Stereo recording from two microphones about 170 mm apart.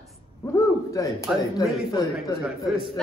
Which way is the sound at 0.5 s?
15° left (ahead or behind).